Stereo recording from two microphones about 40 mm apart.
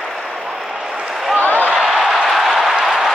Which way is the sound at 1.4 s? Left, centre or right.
Left.